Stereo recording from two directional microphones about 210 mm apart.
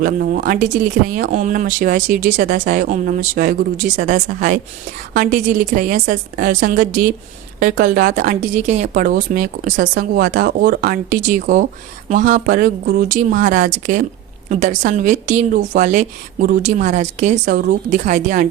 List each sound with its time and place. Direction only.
0.0 s speech: 45° right (ahead or behind)